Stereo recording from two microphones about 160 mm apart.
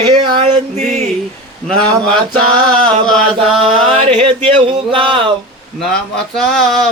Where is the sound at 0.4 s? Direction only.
45° right (ahead or behind).